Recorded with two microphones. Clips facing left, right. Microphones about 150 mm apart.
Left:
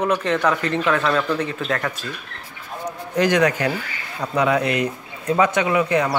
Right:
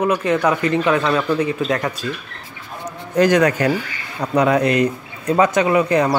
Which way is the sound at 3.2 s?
45° right (ahead or behind).